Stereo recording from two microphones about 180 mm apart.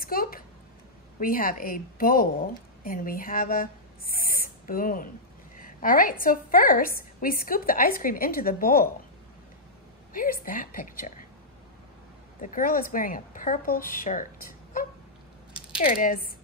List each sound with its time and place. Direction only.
0.0 s a sound: 55° left (ahead or behind)
1.2 s a woman's voice: 50° left (ahead or behind)
10.1 s a woman's voice: 50° left (ahead or behind)
12.4 s a woman's voice: 50° left (ahead or behind)